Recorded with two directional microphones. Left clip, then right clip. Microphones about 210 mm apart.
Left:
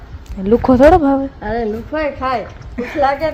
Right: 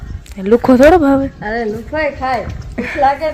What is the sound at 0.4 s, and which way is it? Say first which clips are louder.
Speech: right 2 dB; 10° right (ahead or behind).